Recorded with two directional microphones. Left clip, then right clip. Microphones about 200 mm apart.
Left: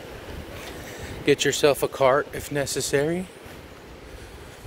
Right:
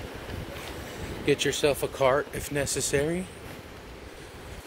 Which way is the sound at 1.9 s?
15° left (ahead or behind).